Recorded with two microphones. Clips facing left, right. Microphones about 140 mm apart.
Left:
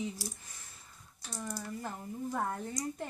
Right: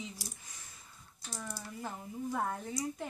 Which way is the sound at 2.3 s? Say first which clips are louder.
Even; 5° right (ahead or behind).